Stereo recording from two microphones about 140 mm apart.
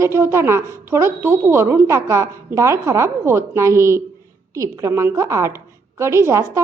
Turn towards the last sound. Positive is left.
turn(degrees=-20)  # may be behind; listen again after turning